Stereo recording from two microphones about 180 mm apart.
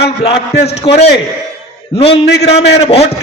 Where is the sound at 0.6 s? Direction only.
35° left (ahead or behind).